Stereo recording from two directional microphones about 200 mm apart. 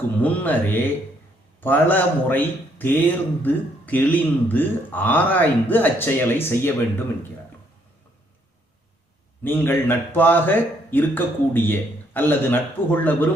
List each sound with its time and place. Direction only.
0.2 s a man's voice: 10° left (ahead or behind)
9.4 s a man's voice: 10° left (ahead or behind)